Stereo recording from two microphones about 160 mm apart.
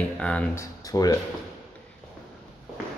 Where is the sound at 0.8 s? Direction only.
25° left (ahead or behind).